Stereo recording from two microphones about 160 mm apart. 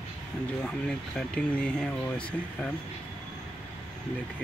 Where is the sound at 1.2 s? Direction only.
5° left (ahead or behind).